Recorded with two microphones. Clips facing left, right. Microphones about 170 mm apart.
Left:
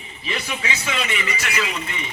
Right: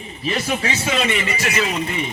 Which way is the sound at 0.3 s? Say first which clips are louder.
Right 6 dB; 40° right (ahead or behind).